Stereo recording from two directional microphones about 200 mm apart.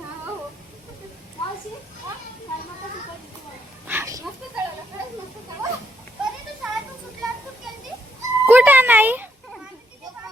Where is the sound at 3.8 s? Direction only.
10° right (ahead or behind).